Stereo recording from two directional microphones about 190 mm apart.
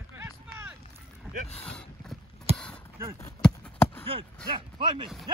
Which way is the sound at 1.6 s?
5° left (ahead or behind).